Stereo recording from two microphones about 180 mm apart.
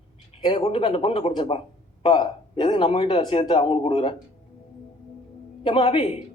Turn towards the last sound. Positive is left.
turn(degrees=30)  # may be behind; listen again after turning